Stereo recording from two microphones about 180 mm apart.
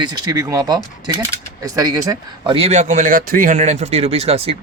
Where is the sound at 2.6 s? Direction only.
40° right (ahead or behind).